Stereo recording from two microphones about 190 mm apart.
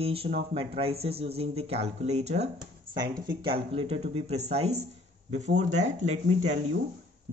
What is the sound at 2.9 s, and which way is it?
Speech, 25° right (ahead or behind).